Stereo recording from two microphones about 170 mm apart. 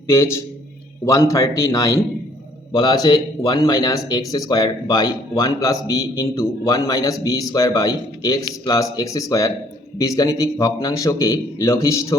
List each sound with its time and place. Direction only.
0.1 s a man's voice: 15° left (ahead or behind)